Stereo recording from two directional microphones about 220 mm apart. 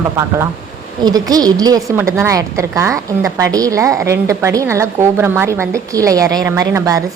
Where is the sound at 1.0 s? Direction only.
15° right (ahead or behind).